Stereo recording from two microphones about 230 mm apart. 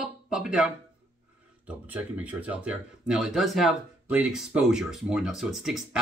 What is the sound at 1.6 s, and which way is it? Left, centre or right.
Speech, centre.